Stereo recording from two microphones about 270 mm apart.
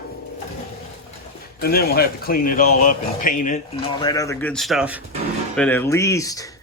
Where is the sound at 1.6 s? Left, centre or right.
Left; by 6.5 s centre.